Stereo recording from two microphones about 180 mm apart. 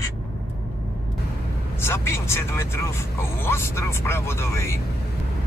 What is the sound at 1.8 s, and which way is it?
Speech, 15° left (ahead or behind).